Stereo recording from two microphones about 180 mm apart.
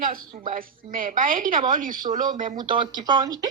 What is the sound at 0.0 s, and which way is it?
A woman's voice, 50° right (ahead or behind).